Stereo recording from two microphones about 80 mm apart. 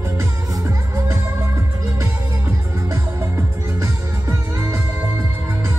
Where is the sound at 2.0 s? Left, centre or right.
Right.